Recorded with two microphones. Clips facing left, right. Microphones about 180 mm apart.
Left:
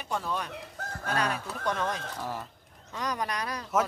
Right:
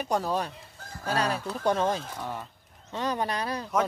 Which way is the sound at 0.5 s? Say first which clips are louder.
Left 6 dB; 70° left (ahead or behind).